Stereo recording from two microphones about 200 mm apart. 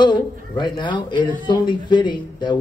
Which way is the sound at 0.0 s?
20° left (ahead or behind).